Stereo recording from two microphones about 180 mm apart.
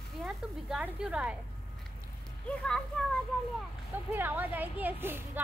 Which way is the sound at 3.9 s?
10° right (ahead or behind).